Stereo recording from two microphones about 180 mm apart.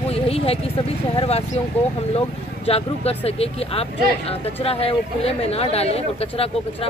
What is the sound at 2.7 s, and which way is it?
Speech, 35° left (ahead or behind).